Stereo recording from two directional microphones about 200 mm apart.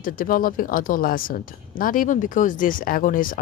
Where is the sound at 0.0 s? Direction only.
45° left (ahead or behind).